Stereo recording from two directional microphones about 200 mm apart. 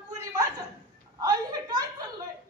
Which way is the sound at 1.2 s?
20° right (ahead or behind).